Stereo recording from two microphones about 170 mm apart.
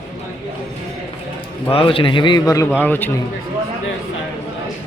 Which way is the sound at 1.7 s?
30° left (ahead or behind).